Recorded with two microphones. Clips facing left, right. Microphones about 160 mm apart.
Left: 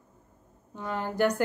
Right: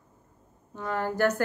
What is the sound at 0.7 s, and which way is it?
Speech, 15° left (ahead or behind).